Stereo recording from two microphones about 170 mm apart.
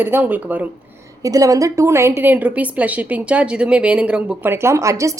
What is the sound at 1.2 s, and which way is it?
A woman's voice, 20° right (ahead or behind).